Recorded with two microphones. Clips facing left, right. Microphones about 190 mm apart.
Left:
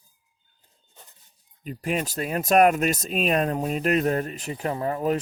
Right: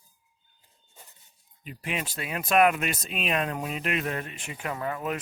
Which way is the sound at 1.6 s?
40° left (ahead or behind).